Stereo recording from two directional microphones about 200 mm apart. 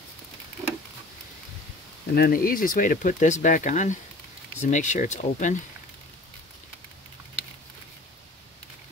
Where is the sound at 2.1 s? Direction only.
50° left (ahead or behind).